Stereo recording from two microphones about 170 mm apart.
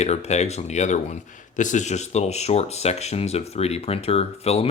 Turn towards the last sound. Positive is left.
turn(degrees=35)  # may be behind; listen again after turning